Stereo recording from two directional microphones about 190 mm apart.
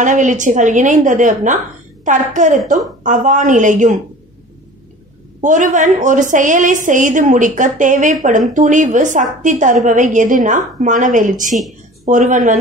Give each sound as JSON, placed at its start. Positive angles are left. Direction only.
{"t": 0.0, "sound": "a woman's voice", "side_deg": -40}
{"t": 5.4, "sound": "a woman's voice", "side_deg": -40}